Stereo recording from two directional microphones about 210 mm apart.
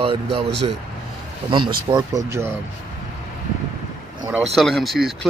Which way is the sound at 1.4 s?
25° right (ahead or behind).